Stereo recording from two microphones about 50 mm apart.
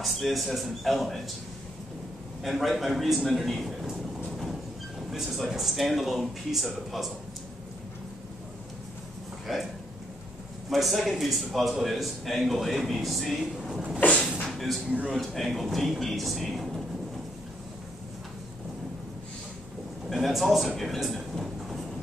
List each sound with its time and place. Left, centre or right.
0.0 s a man's voice: centre
2.4 s a man's voice: centre
5.1 s a man's voice: centre
9.5 s a man's voice: centre
10.7 s a man's voice: centre
13.9 s a sound: left
15.0 s a man's voice: centre
20.1 s a sound: centre
20.7 s speech: centre